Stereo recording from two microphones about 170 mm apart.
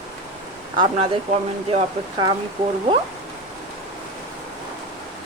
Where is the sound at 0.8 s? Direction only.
35° right (ahead or behind).